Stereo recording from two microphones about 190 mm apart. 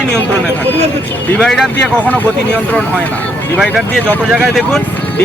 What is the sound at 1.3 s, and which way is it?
Speech, 5° left (ahead or behind).